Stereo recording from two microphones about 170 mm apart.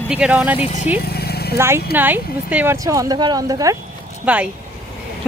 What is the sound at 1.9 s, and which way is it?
A woman's voice, 10° right (ahead or behind).